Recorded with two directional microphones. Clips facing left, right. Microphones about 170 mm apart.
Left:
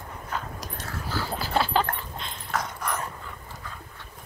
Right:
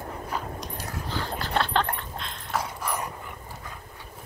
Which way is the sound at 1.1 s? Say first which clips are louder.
Left 2 dB; 5° left (ahead or behind).